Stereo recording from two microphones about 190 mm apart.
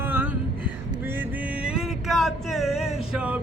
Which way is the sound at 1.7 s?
Centre (ahead or behind).